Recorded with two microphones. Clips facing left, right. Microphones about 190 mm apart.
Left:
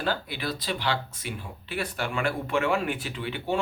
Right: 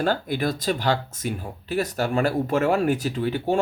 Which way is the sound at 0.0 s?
45° right (ahead or behind).